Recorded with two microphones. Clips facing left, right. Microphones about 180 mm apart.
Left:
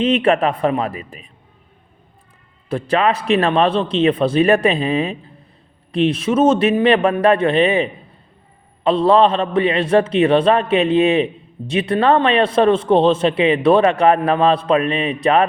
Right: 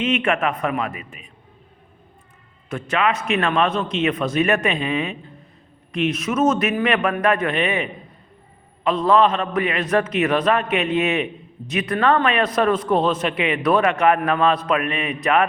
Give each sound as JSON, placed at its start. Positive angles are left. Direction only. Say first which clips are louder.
{"t": 0.0, "sound": "a man's voice", "louder": "left 5 dB", "side_deg": 35}
{"t": 2.6, "sound": "a man's voice", "louder": "left 5 dB", "side_deg": 35}